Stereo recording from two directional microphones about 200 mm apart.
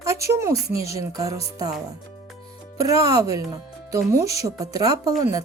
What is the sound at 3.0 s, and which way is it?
Speech, 15° right (ahead or behind).